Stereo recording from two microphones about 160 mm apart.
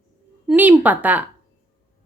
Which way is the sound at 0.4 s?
10° right (ahead or behind).